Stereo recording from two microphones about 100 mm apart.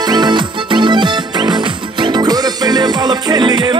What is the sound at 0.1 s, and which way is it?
Music, 50° right (ahead or behind).